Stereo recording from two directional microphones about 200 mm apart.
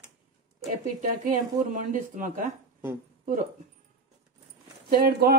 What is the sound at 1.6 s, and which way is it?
Speech, 40° right (ahead or behind).